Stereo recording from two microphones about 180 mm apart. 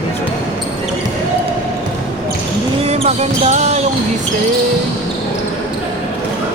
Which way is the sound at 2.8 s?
35° right (ahead or behind).